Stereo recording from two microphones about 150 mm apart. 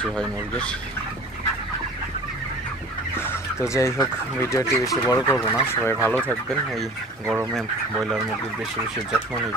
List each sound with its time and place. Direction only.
0.0 s speech: 5° left (ahead or behind)
3.2 s fowl: 15° left (ahead or behind)
4.4 s speech: 20° left (ahead or behind)
5.5 s speech: 10° left (ahead or behind)